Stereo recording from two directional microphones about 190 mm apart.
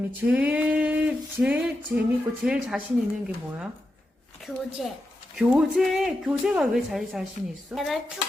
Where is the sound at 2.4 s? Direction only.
5° right (ahead or behind).